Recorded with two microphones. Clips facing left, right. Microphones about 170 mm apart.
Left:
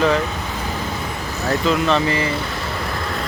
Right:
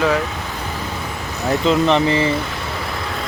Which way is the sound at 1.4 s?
20° right (ahead or behind).